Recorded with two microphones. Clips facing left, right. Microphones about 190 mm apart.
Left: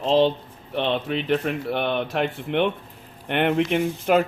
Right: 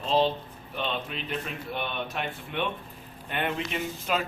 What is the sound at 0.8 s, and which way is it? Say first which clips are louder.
Speech: left 9 dB; 70° left (ahead or behind).